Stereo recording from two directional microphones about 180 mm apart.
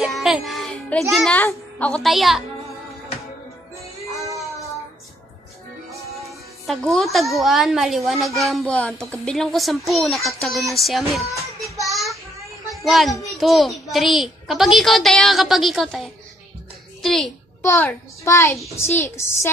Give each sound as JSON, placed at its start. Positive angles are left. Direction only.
{"t": 0.0, "sound": "music", "side_deg": 0}
{"t": 1.1, "sound": "a woman's voice", "side_deg": 5}
{"t": 4.4, "sound": "child singing", "side_deg": 0}
{"t": 6.6, "sound": "a woman's voice", "side_deg": 0}
{"t": 11.9, "sound": "child singing", "side_deg": 0}
{"t": 12.7, "sound": "a child's voice", "side_deg": 0}